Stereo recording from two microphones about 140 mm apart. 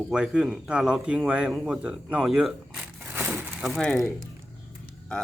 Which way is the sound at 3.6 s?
Centre (ahead or behind).